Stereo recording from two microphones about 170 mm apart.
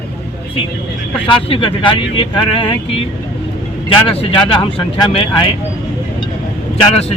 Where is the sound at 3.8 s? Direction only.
35° left (ahead or behind).